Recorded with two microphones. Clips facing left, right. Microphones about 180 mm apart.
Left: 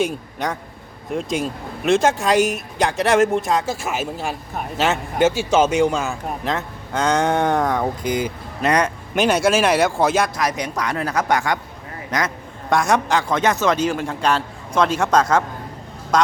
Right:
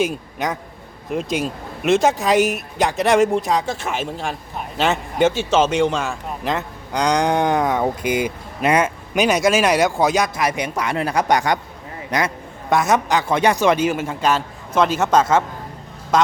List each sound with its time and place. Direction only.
0.0 s a man's voice: centre (ahead or behind)
10.8 s speech: 25° right (ahead or behind)
11.1 s speech: 15° right (ahead or behind)
12.7 s a man's voice: 5° right (ahead or behind)
13.3 s a man's voice: 15° right (ahead or behind)